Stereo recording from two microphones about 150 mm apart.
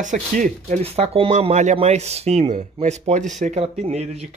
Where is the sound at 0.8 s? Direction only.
40° right (ahead or behind).